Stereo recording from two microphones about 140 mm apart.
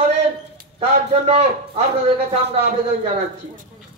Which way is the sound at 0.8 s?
45° right (ahead or behind).